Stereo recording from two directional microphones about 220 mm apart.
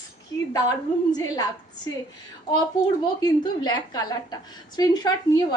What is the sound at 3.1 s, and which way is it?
A woman's voice, 20° left (ahead or behind).